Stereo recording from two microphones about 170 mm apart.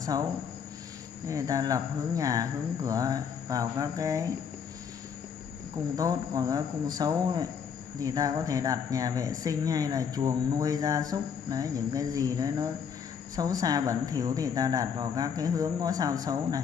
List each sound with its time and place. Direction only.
1.2 s speech: 20° right (ahead or behind)
5.9 s speech: 20° right (ahead or behind)